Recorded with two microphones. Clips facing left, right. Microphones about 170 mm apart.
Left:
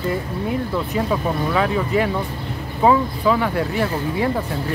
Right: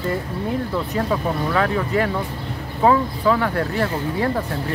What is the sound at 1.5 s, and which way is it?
Speech, 15° left (ahead or behind).